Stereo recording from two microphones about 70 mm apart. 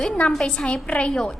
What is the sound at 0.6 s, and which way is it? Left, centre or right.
Speech, centre.